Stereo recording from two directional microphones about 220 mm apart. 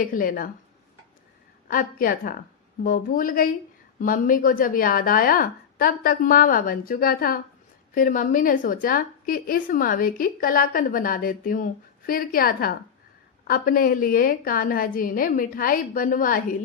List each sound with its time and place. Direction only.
0.0 s a woman's voice: 40° left (ahead or behind)
1.6 s a woman's voice: 40° left (ahead or behind)